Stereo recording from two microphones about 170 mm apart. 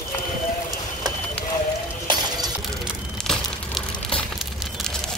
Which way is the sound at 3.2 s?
5° left (ahead or behind).